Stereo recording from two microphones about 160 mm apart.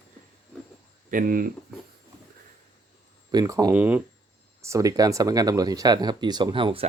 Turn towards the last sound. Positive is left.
turn(degrees=-35)  # may be behind; listen again after turning